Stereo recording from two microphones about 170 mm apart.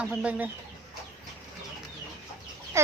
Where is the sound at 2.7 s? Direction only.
15° right (ahead or behind).